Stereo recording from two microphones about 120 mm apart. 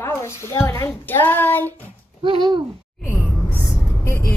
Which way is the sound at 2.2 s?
40° right (ahead or behind).